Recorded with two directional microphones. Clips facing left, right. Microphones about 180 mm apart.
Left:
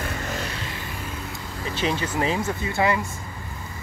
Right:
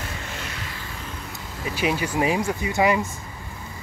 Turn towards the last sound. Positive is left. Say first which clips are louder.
# right 2 dB
turn(degrees=-15)  # may be behind; listen again after turning